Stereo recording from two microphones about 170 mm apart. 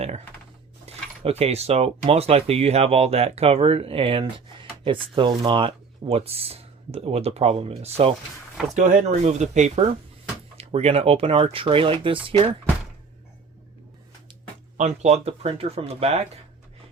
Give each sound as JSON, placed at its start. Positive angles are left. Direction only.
{"t": 0.9, "sound": "speech", "side_deg": -35}
{"t": 14.8, "sound": "speech", "side_deg": -40}